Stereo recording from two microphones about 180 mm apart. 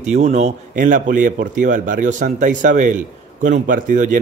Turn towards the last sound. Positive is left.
turn(degrees=-45)  # may be behind; listen again after turning